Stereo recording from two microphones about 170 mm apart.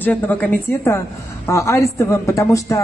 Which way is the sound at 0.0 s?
10° left (ahead or behind).